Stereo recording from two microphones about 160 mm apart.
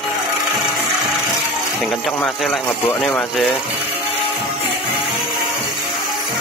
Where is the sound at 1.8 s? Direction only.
Centre (ahead or behind).